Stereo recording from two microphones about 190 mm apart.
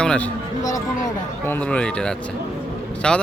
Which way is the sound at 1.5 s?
5° left (ahead or behind).